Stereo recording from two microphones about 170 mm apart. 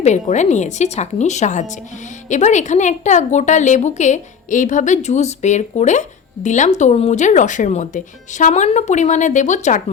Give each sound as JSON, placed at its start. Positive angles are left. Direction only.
{"t": 0.0, "sound": "a woman's voice", "side_deg": 45}